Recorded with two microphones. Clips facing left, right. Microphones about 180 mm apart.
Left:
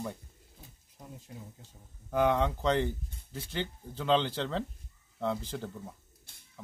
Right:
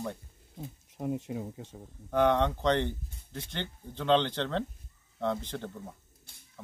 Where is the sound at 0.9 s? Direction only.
70° right (ahead or behind).